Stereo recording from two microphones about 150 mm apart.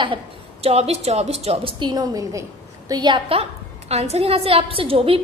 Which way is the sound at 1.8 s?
25° right (ahead or behind).